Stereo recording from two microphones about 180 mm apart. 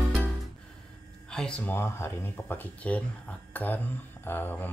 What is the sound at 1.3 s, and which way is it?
Speech, 5° left (ahead or behind).